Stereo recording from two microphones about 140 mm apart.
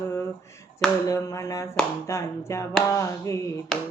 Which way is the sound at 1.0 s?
20° left (ahead or behind).